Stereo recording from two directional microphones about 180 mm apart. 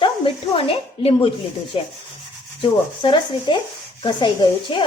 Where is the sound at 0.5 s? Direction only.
30° left (ahead or behind).